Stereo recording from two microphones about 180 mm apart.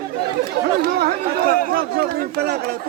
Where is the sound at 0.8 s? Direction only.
60° right (ahead or behind).